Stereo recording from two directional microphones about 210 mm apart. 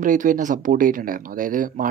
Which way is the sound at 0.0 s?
40° right (ahead or behind).